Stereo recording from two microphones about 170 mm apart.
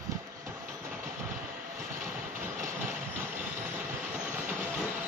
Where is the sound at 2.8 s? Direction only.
10° right (ahead or behind).